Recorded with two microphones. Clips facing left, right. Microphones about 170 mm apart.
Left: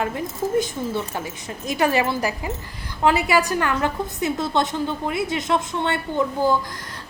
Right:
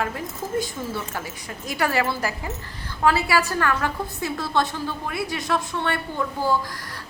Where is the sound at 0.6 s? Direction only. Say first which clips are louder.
Left 4 dB; 20° left (ahead or behind).